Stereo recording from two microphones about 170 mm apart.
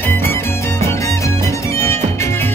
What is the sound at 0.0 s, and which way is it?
Music, 10° left (ahead or behind).